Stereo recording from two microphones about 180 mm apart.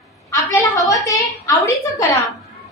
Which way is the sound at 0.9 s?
20° left (ahead or behind).